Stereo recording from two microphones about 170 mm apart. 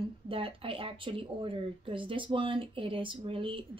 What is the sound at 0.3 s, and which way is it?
Speech, 30° right (ahead or behind).